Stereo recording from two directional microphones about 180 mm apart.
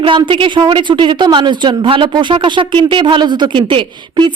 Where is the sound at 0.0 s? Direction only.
30° right (ahead or behind).